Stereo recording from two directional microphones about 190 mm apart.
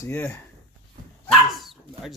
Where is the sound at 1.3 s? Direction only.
Centre (ahead or behind).